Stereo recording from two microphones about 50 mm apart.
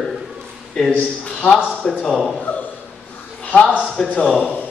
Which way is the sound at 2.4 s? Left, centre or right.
Left.